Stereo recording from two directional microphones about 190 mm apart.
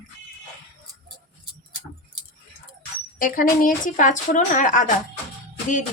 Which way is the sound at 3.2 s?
45° left (ahead or behind).